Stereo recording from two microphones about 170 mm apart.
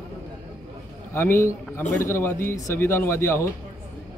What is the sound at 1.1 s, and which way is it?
Speech, 15° left (ahead or behind).